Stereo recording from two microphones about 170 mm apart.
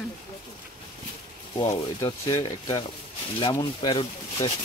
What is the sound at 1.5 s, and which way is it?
Speech, 30° left (ahead or behind).